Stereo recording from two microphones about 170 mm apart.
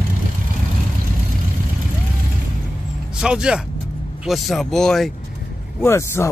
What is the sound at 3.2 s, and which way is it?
Speech, 5° right (ahead or behind).